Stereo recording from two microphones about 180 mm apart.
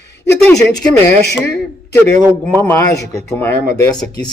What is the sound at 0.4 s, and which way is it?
Speech, 5° left (ahead or behind).